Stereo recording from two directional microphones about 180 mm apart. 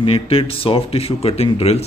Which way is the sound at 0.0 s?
30° left (ahead or behind).